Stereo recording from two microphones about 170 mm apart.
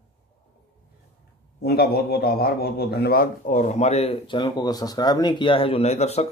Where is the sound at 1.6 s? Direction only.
65° left (ahead or behind).